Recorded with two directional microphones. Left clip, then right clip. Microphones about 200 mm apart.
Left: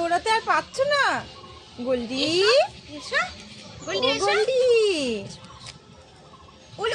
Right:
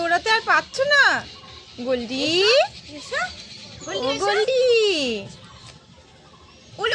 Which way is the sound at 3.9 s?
30° right (ahead or behind).